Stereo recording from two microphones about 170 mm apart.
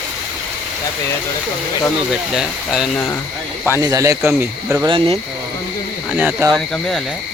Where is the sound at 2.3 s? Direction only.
Centre (ahead or behind).